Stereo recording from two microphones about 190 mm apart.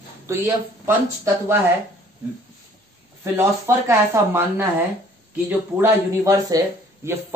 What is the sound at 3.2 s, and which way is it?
Speech, 15° right (ahead or behind).